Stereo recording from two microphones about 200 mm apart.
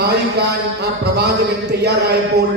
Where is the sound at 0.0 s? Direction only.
55° right (ahead or behind).